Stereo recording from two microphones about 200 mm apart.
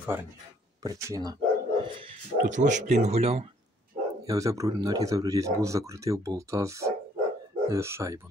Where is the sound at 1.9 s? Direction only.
30° right (ahead or behind).